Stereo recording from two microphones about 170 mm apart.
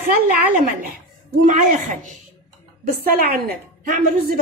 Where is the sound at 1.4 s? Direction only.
45° right (ahead or behind).